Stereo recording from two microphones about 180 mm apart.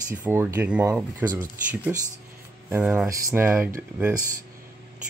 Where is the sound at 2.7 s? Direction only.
5° right (ahead or behind).